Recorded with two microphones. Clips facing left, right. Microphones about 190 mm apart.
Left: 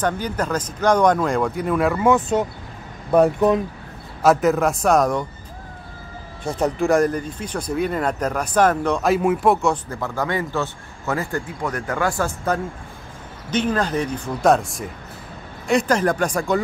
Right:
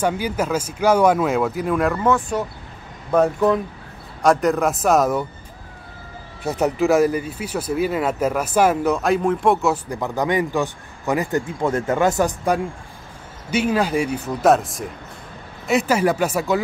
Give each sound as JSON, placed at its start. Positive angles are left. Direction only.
{"t": 0.0, "sound": "a man's voice", "side_deg": -10}
{"t": 2.0, "sound": "speech", "side_deg": 20}
{"t": 4.2, "sound": "speech", "side_deg": 5}
{"t": 6.6, "sound": "speech", "side_deg": -5}
{"t": 9.8, "sound": "a man's voice", "side_deg": -15}